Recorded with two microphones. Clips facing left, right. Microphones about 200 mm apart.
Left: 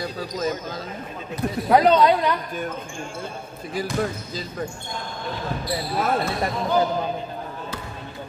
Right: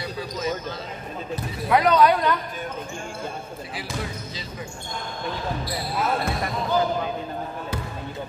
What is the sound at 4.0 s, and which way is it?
Speech, 50° left (ahead or behind).